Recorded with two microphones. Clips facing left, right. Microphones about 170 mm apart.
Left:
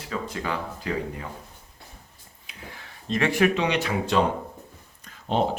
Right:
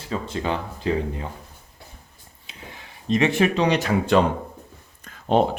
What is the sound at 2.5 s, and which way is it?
Speech, 20° right (ahead or behind).